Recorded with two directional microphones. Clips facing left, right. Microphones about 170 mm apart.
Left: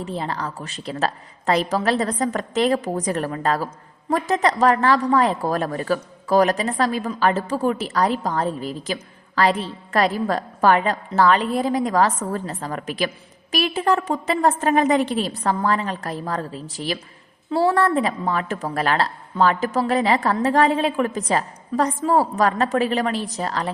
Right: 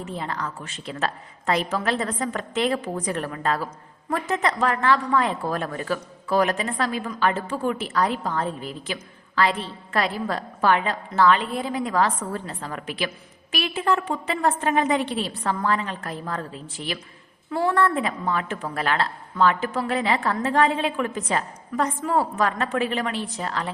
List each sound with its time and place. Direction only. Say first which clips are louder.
0.0 s a woman's voice: left 3 dB; 35° left (ahead or behind)